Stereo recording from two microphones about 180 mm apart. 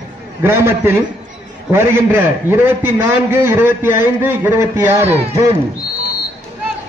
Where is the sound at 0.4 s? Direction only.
15° right (ahead or behind).